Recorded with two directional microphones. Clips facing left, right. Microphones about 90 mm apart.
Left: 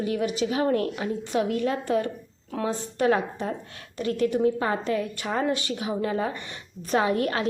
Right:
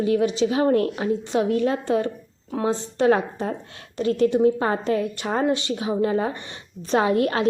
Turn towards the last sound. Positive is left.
turn(degrees=-35)  # may be behind; listen again after turning